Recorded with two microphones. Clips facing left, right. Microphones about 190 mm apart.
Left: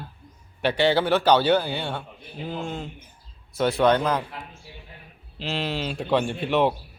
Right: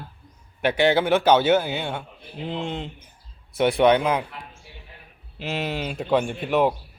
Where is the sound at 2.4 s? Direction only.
20° right (ahead or behind).